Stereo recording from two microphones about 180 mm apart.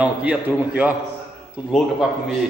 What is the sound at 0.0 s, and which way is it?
A man's voice, 5° right (ahead or behind).